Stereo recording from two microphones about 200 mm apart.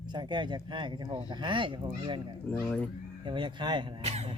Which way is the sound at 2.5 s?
5° left (ahead or behind).